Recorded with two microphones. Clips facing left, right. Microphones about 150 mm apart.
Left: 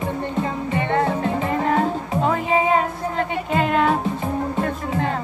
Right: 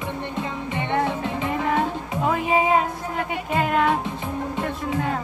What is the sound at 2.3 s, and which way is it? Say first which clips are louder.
Music: even; 10° right (ahead or behind).